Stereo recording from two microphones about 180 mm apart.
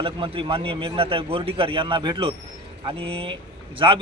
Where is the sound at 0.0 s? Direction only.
30° right (ahead or behind).